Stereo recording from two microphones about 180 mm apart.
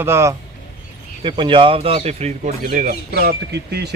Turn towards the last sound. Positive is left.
turn(degrees=-65)  # may be behind; listen again after turning